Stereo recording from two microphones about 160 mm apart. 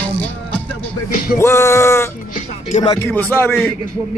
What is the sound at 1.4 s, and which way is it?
Music, 15° left (ahead or behind).